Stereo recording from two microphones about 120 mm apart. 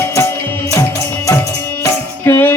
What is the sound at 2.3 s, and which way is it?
Music, 20° left (ahead or behind).